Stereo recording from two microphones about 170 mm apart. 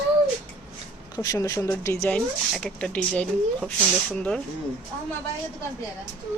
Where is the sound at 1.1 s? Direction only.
20° left (ahead or behind).